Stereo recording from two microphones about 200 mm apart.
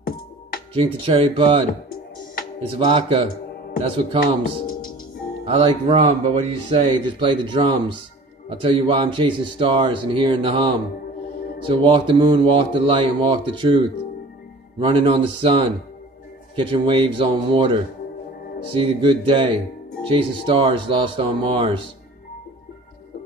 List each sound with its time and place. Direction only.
1.0 s speech: 25° right (ahead or behind)
5.4 s speech: 25° right (ahead or behind)
18.8 s speech: 25° right (ahead or behind)